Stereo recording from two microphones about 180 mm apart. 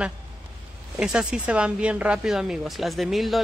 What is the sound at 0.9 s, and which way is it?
Speech, 5° right (ahead or behind).